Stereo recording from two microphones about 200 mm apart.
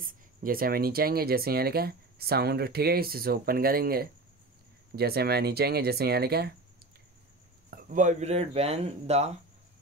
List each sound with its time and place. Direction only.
0.0 s speech: 45° right (ahead or behind)
7.7 s speech: 40° right (ahead or behind)